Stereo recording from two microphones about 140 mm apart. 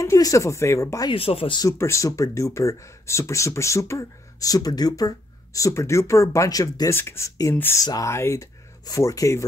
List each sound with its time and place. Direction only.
0.0 s speech: 20° left (ahead or behind)
1.1 s speech: 40° left (ahead or behind)
1.6 s speech: 20° left (ahead or behind)